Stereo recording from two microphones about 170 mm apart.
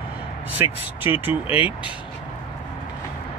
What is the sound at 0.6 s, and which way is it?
Speech, 15° right (ahead or behind).